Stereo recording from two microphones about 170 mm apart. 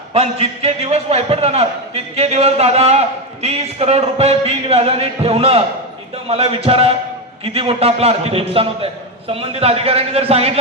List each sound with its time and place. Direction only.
0.1 s a man's voice: 35° right (ahead or behind)